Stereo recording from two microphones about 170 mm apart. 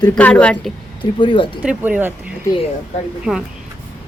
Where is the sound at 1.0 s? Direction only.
30° left (ahead or behind).